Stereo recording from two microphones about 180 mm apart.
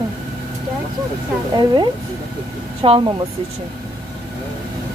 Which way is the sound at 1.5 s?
20° right (ahead or behind).